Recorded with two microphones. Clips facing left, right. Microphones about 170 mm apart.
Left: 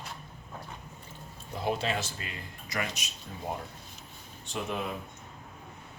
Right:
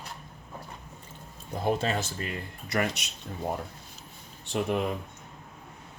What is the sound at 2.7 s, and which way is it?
Speech, 65° right (ahead or behind).